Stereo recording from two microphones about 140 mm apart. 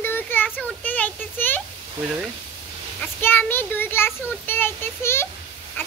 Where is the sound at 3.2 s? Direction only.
15° left (ahead or behind).